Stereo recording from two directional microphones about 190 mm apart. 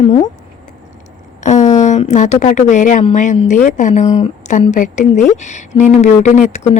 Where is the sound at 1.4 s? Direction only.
35° left (ahead or behind).